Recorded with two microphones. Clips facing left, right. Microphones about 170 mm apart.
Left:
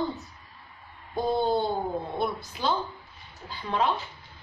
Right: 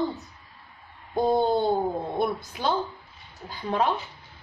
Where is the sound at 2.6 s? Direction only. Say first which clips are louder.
Right 1 dB; 55° right (ahead or behind).